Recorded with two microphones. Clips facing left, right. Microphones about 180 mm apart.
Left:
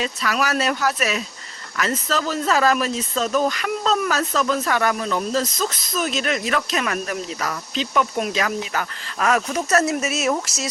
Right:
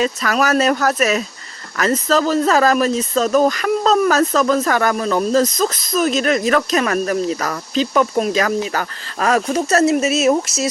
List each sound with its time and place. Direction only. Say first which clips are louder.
0.0 s speech: right 6 dB; 45° right (ahead or behind); by 10.7 s 25° right (ahead or behind)